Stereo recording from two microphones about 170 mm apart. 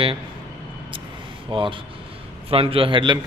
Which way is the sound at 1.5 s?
30° right (ahead or behind).